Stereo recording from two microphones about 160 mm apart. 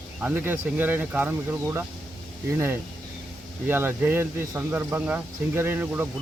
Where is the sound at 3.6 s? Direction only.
15° right (ahead or behind).